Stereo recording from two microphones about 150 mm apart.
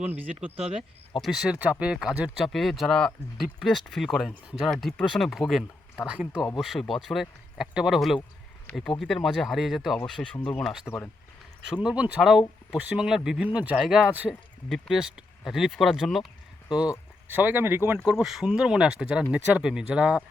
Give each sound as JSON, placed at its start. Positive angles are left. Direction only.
{"t": 0.0, "sound": "speech", "side_deg": -10}
{"t": 0.5, "sound": "speech", "side_deg": -40}
{"t": 0.8, "sound": "speech", "side_deg": 0}
{"t": 10.8, "sound": "speech", "side_deg": 10}
{"t": 11.6, "sound": "speech", "side_deg": -5}
{"t": 16.6, "sound": "speech", "side_deg": 25}
{"t": 17.2, "sound": "speech", "side_deg": -15}